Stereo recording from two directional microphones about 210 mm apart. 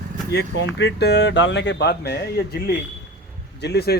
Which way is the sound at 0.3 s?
55° left (ahead or behind).